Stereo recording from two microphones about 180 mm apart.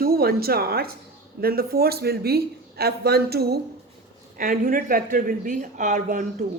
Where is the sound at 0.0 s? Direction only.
55° right (ahead or behind).